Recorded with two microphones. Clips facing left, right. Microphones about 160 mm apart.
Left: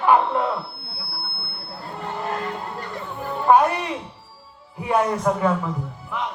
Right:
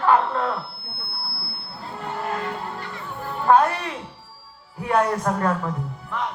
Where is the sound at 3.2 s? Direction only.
15° left (ahead or behind).